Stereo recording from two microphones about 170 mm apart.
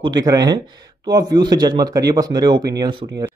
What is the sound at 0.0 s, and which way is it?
A man's voice, 25° right (ahead or behind).